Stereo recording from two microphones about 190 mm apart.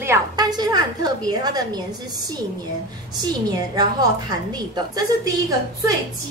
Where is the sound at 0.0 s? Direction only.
15° right (ahead or behind).